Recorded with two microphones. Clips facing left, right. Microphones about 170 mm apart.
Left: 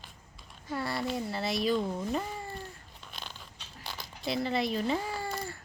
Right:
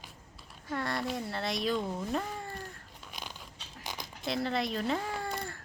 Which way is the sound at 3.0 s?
10° right (ahead or behind).